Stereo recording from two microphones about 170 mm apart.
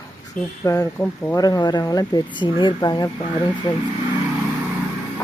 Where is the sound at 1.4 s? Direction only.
20° left (ahead or behind).